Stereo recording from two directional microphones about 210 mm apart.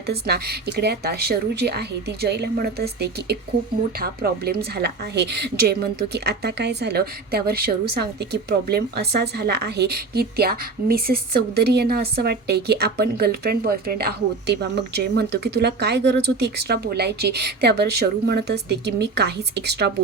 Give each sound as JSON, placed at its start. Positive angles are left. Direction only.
{"t": 0.1, "sound": "a woman's voice", "side_deg": -50}